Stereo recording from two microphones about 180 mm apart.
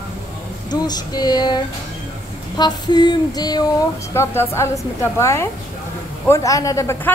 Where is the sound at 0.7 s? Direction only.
20° left (ahead or behind).